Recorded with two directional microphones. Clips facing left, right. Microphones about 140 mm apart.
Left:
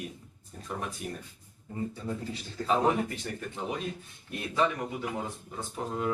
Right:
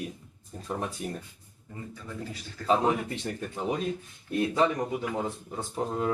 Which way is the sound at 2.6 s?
25° left (ahead or behind).